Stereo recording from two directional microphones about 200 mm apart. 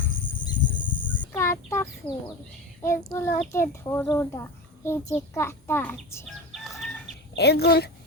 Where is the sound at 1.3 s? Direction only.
15° left (ahead or behind).